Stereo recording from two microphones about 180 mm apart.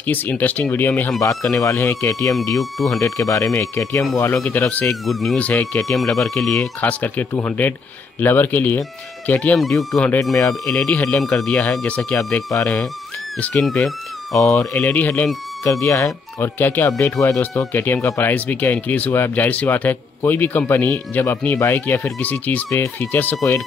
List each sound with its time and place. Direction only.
0.0 s speech: 10° left (ahead or behind)
1.5 s speech: 15° left (ahead or behind)
2.6 s speech: centre (ahead or behind)
3.0 s speech: 15° left (ahead or behind)